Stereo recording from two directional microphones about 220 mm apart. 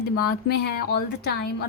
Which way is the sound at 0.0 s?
50° left (ahead or behind).